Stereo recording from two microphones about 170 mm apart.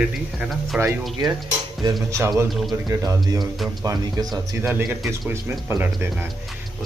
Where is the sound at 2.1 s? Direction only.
15° right (ahead or behind).